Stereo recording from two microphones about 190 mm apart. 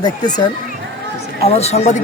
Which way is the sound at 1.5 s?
35° left (ahead or behind).